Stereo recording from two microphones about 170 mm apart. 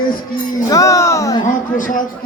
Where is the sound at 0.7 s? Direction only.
20° left (ahead or behind).